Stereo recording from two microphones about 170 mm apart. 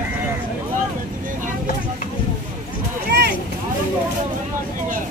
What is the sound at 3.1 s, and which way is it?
Boat, 75° right (ahead or behind).